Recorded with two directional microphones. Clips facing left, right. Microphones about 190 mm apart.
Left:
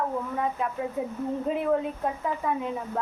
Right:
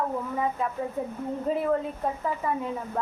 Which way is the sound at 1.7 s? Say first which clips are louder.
Left 1 dB; centre (ahead or behind).